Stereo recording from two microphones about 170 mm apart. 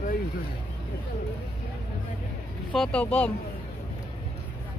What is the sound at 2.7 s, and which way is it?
Speech, 5° left (ahead or behind).